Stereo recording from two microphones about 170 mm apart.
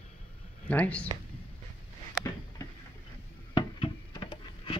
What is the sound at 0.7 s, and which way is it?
Speech, 10° left (ahead or behind).